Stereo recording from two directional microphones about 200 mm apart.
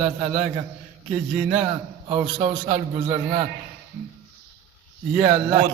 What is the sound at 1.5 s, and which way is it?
A man's voice, 20° right (ahead or behind).